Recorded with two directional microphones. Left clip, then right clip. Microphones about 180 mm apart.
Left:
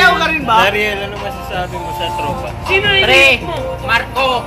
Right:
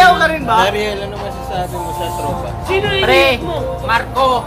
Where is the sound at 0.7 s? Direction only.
Centre (ahead or behind).